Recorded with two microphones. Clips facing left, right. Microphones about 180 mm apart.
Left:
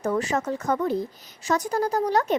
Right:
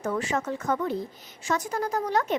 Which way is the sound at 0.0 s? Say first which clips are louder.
Left 3 dB; 40° left (ahead or behind).